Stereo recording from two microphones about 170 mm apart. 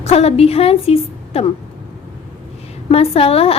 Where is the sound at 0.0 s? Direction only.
40° left (ahead or behind).